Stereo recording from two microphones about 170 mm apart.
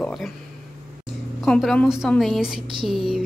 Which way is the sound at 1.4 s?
Centre (ahead or behind).